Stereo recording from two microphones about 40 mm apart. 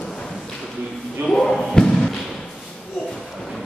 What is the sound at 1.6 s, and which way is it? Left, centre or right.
Thump, centre.